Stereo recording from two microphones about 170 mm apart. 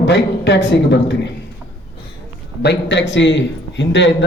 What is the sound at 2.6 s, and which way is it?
A man's voice, 85° left.